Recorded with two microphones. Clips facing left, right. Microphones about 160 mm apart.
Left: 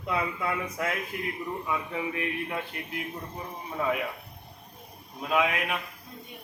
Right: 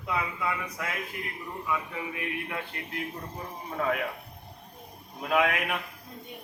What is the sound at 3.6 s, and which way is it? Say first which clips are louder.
Speech: even; 5° left (ahead or behind).